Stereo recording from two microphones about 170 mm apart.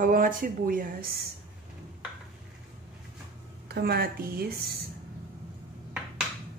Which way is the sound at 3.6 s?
70° right (ahead or behind).